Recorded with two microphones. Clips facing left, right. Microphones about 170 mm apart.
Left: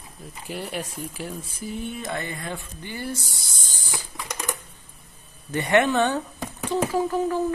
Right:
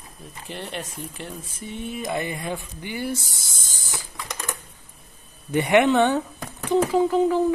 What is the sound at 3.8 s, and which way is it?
Typing, 15° left (ahead or behind).